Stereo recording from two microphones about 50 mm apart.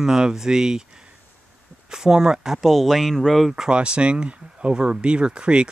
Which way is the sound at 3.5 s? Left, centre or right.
Centre.